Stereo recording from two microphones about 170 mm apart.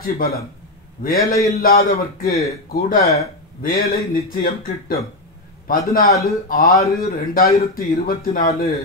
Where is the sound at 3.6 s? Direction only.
60° left (ahead or behind).